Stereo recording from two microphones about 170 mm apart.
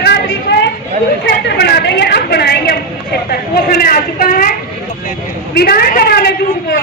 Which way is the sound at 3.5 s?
60° left (ahead or behind).